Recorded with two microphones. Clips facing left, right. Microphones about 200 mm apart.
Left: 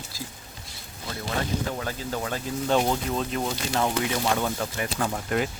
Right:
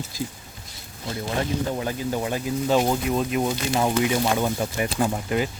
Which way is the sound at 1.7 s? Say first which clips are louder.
Right 5 dB; 15° right (ahead or behind).